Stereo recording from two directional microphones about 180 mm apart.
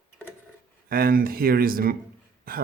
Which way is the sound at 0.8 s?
55° right (ahead or behind).